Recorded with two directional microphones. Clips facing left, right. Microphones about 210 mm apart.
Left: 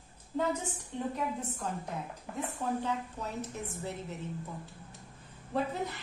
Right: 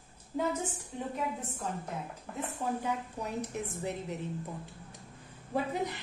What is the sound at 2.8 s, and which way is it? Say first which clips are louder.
Speech: even; 15° right (ahead or behind).